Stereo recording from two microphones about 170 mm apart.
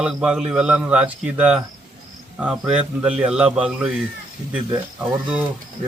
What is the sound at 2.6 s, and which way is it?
A man's voice, 5° right (ahead or behind).